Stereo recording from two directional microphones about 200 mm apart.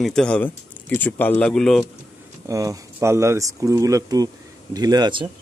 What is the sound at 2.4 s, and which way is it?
Speech, 15° right (ahead or behind).